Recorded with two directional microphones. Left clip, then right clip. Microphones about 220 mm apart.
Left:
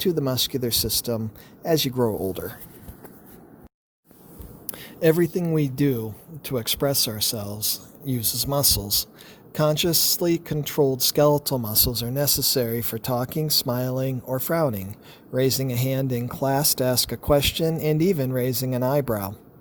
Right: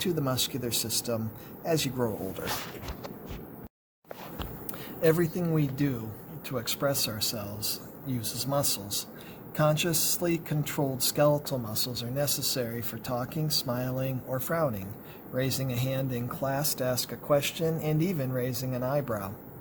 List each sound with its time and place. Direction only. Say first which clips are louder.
0.0 s speech: left 6 dB; 40° left (ahead or behind)
4.9 s speech: left 5 dB; 45° left (ahead or behind)